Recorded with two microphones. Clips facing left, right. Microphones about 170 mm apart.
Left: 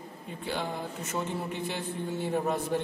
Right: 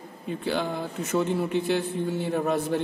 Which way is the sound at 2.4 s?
90° right.